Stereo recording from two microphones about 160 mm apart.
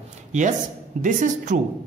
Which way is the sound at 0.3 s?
50° right (ahead or behind).